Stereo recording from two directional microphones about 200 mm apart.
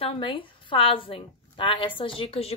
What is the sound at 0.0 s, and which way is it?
A woman's voice, 25° left (ahead or behind).